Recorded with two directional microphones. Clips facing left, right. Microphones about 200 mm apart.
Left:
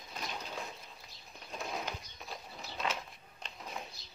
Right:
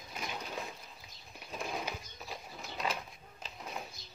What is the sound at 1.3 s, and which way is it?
Bird, 5° right (ahead or behind).